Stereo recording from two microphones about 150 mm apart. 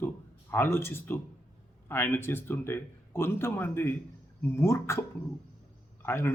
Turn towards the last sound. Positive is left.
turn(degrees=15)  # may be behind; listen again after turning